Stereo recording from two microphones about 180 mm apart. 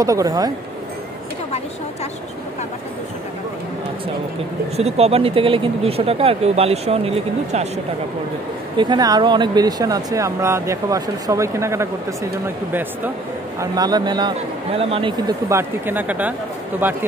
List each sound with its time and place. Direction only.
0.0 s speech: 20° right (ahead or behind)
4.7 s speech: 35° right (ahead or behind)
8.7 s speech: 25° right (ahead or behind)
13.6 s speech: 20° right (ahead or behind)
15.4 s speech: 15° right (ahead or behind)